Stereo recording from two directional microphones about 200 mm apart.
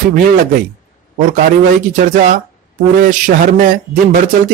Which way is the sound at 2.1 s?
40° right (ahead or behind).